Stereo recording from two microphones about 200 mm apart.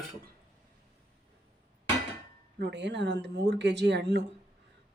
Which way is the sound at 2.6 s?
60° right (ahead or behind).